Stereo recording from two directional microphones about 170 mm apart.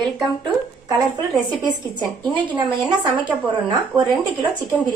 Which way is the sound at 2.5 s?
25° right (ahead or behind).